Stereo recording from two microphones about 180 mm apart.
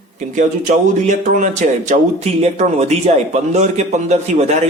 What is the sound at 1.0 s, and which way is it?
Speech, 45° right (ahead or behind).